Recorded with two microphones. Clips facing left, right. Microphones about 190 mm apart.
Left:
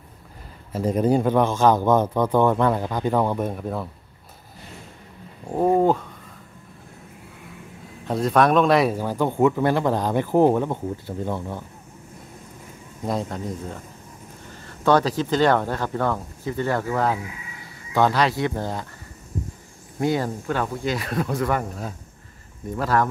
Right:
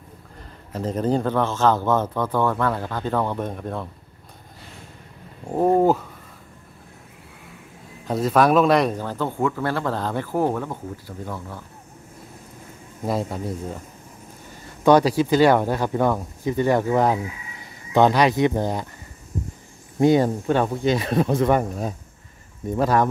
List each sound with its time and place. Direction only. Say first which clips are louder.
0.7 s speech: left 3 dB; 10° left (ahead or behind)
5.8 s speech: right 1 dB; 5° right (ahead or behind)
8.0 s speech: even; centre (ahead or behind); by 11.6 s 25° left (ahead or behind)
13.0 s a man's voice: right 1 dB; 5° right (ahead or behind)
14.8 s speech: right 3 dB; 15° right (ahead or behind)
20.0 s speech: right 6 dB; 20° right (ahead or behind)